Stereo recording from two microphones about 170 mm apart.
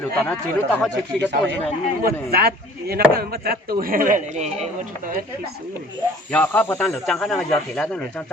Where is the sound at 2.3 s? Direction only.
65° right (ahead or behind); by 5.2 s 50° right (ahead or behind).